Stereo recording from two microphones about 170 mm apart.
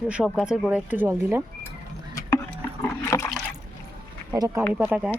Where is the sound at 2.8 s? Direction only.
15° left (ahead or behind).